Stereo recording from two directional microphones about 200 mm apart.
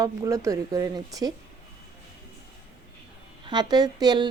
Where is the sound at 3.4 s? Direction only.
20° right (ahead or behind).